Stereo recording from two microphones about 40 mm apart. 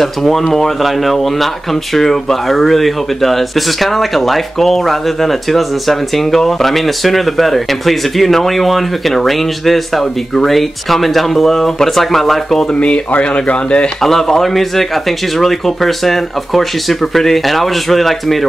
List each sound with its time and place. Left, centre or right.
0.0 s speech: centre
12.7 s speech: left
14.0 s speech: centre